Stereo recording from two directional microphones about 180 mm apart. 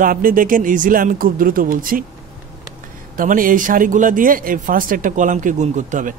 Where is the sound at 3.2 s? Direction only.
50° right (ahead or behind).